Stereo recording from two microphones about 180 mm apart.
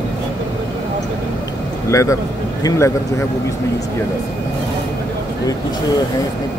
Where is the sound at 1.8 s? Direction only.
15° left (ahead or behind).